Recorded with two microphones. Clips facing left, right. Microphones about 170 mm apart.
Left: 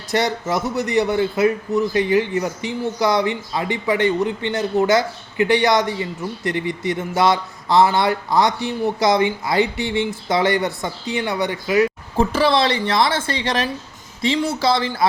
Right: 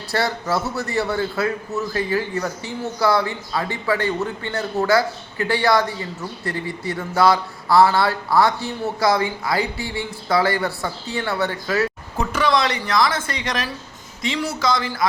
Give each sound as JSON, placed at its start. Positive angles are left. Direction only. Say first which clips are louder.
{"t": 0.1, "sound": "a man's voice", "louder": "left 2 dB", "side_deg": 20}
{"t": 12.1, "sound": "a man's voice", "louder": "left 3 dB", "side_deg": 30}